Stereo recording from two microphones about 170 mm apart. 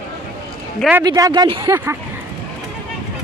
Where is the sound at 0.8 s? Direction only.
5° right (ahead or behind).